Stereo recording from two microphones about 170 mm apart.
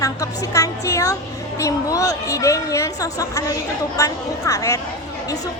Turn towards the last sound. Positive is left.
turn(degrees=20)  # may be behind; listen again after turning